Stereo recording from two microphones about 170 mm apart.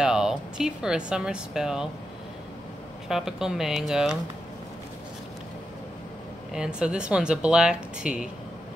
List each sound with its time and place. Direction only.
0.0 s speech: 5° right (ahead or behind)
3.1 s speech: centre (ahead or behind)
6.5 s speech: 5° right (ahead or behind)